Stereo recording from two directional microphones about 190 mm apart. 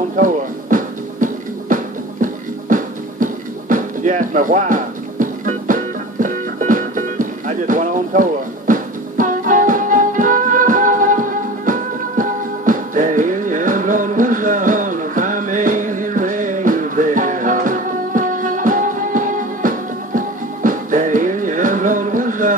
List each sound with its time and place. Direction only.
0.1 s music: 45° right (ahead or behind)